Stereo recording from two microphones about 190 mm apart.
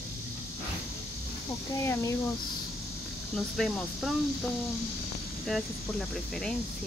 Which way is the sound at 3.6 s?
Centre (ahead or behind).